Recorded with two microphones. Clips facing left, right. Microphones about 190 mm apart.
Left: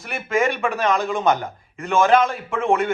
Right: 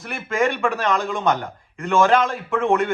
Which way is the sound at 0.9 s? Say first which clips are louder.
Left 1 dB; 5° left (ahead or behind).